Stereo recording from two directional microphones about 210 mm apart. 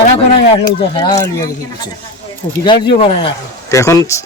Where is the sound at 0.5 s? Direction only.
20° left (ahead or behind).